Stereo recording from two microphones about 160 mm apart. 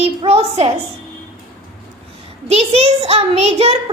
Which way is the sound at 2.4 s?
40° right (ahead or behind).